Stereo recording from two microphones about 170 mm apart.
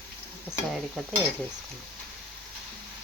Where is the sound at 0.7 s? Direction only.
Centre (ahead or behind).